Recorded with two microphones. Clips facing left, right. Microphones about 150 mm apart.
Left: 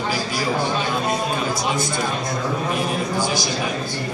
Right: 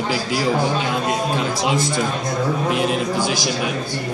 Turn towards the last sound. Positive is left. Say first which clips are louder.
# right 3 dB
turn(degrees=-80)